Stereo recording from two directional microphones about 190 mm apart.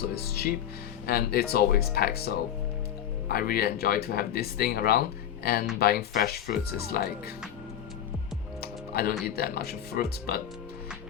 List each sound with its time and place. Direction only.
0.1 s speech: 55° left (ahead or behind)
8.6 s speech: 55° left (ahead or behind)